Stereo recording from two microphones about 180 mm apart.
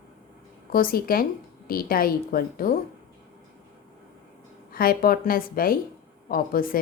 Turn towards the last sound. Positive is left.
turn(degrees=50)  # may be behind; listen again after turning